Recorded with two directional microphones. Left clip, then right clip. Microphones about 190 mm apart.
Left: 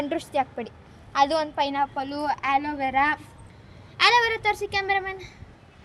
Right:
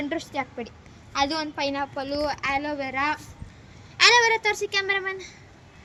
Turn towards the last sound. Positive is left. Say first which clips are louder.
# even
turn(degrees=65)  # may be behind; listen again after turning